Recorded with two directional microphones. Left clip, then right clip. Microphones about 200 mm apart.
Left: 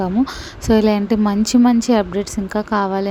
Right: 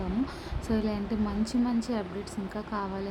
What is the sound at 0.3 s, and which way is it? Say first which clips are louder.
Speech: left 15 dB; 45° left (ahead or behind).